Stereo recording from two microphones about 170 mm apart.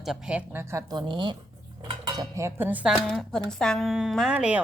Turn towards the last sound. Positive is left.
turn(degrees=-5)  # may be behind; listen again after turning